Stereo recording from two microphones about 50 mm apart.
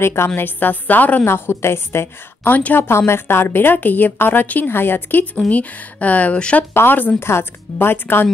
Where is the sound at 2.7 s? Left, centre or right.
Left.